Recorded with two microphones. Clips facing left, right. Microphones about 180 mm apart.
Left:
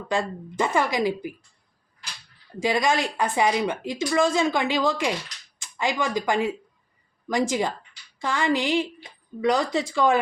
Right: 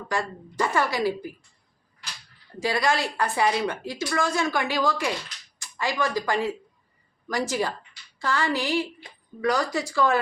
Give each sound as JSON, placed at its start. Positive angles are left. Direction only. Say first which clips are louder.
{"t": 0.1, "sound": "speech", "louder": "left 3 dB", "side_deg": 20}
{"t": 2.6, "sound": "a woman's voice", "louder": "left 2 dB", "side_deg": 20}